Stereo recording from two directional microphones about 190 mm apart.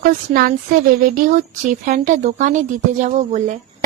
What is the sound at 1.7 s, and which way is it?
A woman's voice, 40° right (ahead or behind).